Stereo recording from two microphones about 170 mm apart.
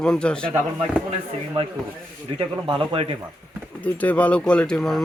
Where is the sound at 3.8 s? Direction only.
10° left (ahead or behind).